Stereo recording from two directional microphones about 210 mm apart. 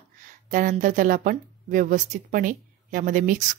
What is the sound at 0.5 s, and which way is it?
Speech, 40° right (ahead or behind).